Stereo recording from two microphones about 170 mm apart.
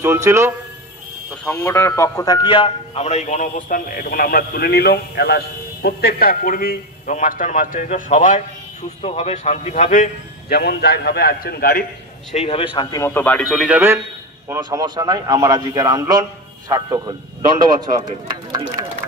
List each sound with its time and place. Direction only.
0.0 s speech: 15° right (ahead or behind)
1.3 s a man's voice: 10° left (ahead or behind); by 8.4 s 50° left (ahead or behind)
9.0 s a man's voice: 35° left (ahead or behind)
10.5 s a man's voice: 70° left (ahead or behind)
12.3 s speech: 40° left (ahead or behind); by 13.7 s centre (ahead or behind)
14.5 s a man's voice: 20° right (ahead or behind)